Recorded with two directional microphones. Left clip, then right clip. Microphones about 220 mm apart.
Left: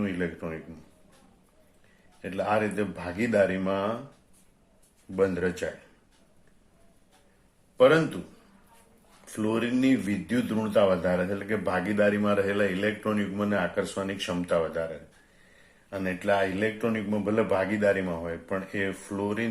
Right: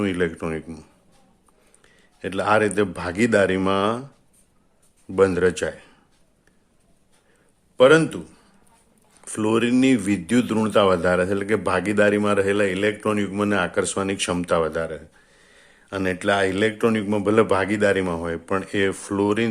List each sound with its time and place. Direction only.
0.0 s speech: 45° right (ahead or behind)
2.2 s speech: 45° right (ahead or behind)
5.1 s speech: 45° right (ahead or behind)
7.8 s a man's voice: 40° right (ahead or behind)
9.2 s speech: 45° right (ahead or behind)
15.9 s speech: 45° right (ahead or behind)